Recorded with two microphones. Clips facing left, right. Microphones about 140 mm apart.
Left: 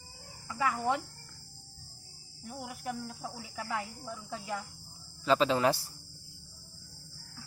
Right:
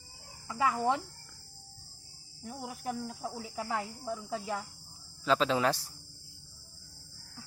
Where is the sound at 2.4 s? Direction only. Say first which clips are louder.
Right 1 dB; 30° right (ahead or behind).